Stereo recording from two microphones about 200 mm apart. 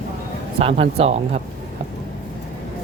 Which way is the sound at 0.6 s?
30° right (ahead or behind).